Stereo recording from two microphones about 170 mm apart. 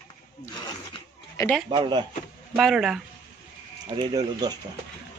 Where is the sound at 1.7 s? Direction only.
25° right (ahead or behind).